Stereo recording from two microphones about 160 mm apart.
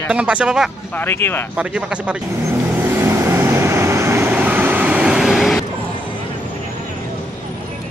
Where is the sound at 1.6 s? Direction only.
5° right (ahead or behind).